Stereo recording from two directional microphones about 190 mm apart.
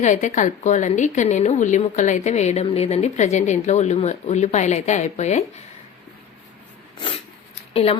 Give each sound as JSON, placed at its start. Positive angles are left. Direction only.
{"t": 0.0, "sound": "a woman's voice", "side_deg": 40}
{"t": 7.7, "sound": "speech", "side_deg": 30}